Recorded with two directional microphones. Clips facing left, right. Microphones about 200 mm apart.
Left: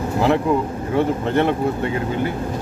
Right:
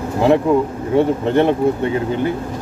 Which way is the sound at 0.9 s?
15° right (ahead or behind).